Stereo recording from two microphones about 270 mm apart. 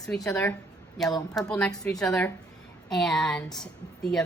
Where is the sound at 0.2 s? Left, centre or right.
Centre.